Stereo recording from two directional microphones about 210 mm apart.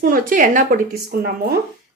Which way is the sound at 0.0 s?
40° right (ahead or behind).